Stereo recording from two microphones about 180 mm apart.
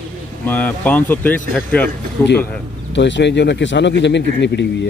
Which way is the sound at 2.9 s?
80° left.